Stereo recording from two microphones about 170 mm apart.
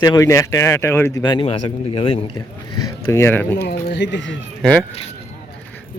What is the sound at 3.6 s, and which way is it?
Speech, 70° left (ahead or behind).